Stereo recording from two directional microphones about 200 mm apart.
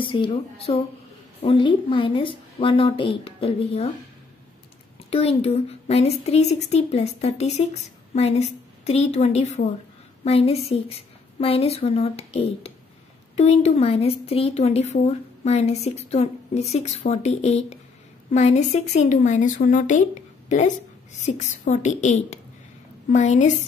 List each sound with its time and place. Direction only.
0.0 s a woman's voice: 25° left (ahead or behind)
5.1 s a woman's voice: 30° left (ahead or behind)